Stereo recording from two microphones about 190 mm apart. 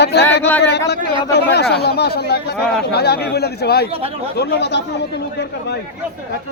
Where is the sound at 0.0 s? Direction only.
60° left (ahead or behind).